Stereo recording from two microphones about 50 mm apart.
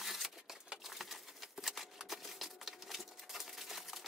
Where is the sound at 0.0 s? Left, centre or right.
Centre.